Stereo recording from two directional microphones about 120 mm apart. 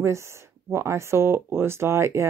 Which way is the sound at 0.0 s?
25° right (ahead or behind).